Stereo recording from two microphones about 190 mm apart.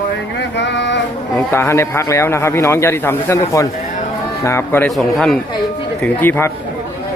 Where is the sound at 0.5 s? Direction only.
70° left (ahead or behind).